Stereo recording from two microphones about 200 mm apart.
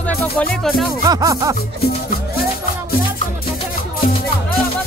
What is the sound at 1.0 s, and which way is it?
Music, 15° right (ahead or behind).